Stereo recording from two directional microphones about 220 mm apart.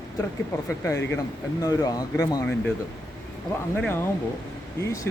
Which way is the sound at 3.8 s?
10° left (ahead or behind).